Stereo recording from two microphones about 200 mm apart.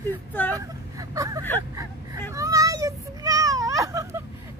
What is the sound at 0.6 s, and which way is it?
Vehicle, 15° right (ahead or behind).